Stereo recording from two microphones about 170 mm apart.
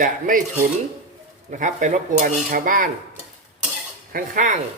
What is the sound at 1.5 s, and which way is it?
Dishes, 45° right (ahead or behind).